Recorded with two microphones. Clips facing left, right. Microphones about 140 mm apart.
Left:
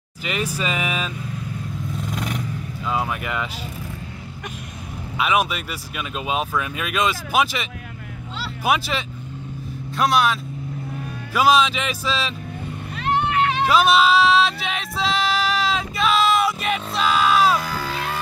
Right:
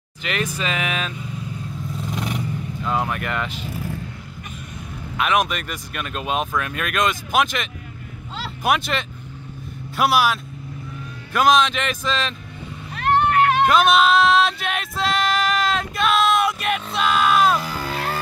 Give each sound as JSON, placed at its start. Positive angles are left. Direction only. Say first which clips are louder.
{"t": 0.2, "sound": "speech", "louder": "even", "side_deg": 5}
{"t": 2.0, "sound": "vehicle", "louder": "right 1 dB", "side_deg": 0}
{"t": 5.1, "sound": "speech", "louder": "even", "side_deg": 5}
{"t": 12.9, "sound": "vehicle", "louder": "right 3 dB", "side_deg": -55}
{"t": 13.7, "sound": "a sound", "louder": "even", "side_deg": 0}
{"t": 17.9, "sound": "music", "louder": "right 1 dB", "side_deg": -40}